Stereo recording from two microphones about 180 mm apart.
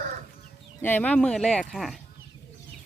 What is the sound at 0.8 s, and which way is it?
Speech, 10° left (ahead or behind).